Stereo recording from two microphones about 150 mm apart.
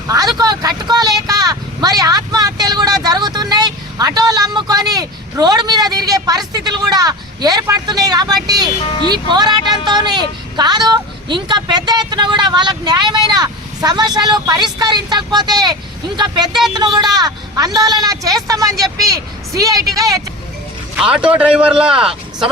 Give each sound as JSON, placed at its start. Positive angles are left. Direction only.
{"t": 0.1, "sound": "vehicle", "side_deg": -25}
{"t": 3.0, "sound": "speech", "side_deg": -30}
{"t": 20.9, "sound": "speech", "side_deg": -5}